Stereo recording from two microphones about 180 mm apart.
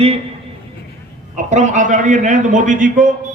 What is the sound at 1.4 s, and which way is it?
A man's voice, 40° right (ahead or behind).